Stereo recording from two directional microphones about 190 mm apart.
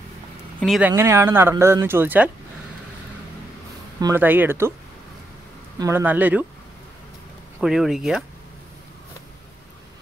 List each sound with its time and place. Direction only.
0.6 s speech: centre (ahead or behind)
4.0 s speech: 10° right (ahead or behind)
5.8 s speech: 15° right (ahead or behind)
7.6 s speech: centre (ahead or behind)